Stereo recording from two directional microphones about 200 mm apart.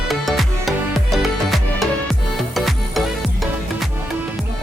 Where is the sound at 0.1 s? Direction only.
Centre (ahead or behind).